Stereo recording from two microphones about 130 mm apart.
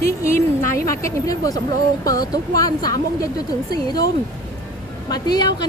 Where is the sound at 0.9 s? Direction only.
25° left (ahead or behind).